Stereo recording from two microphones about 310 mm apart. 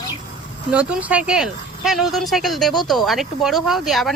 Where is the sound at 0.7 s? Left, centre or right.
Centre.